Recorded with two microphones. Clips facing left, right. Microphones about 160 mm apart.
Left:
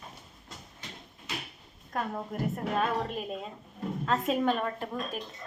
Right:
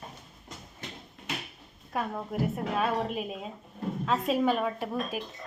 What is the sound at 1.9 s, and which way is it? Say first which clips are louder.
A woman's voice: right 2 dB; 5° right (ahead or behind).